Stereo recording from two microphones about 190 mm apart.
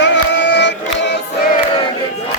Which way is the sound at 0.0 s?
70° left (ahead or behind).